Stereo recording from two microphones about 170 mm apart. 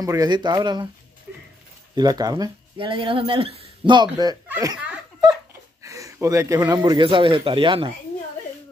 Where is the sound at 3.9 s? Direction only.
25° right (ahead or behind).